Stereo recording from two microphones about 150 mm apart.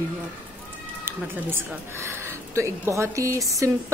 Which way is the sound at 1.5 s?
15° right (ahead or behind).